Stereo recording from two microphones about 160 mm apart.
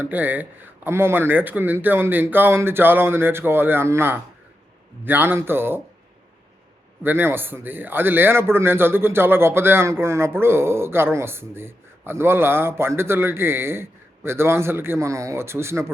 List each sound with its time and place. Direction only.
0.0 s speech: 10° right (ahead or behind)
7.0 s speech: 15° right (ahead or behind)